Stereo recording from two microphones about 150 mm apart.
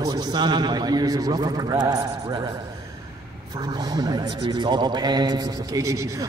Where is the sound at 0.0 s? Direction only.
25° right (ahead or behind).